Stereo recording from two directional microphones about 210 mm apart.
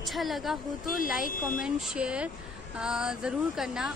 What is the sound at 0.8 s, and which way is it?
Speech, 45° left (ahead or behind).